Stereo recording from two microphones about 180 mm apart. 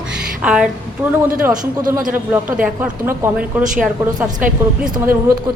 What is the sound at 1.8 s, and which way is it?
A man's voice, 20° right (ahead or behind).